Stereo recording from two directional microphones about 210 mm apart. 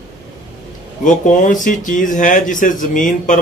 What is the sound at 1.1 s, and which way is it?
Speech, 40° left (ahead or behind).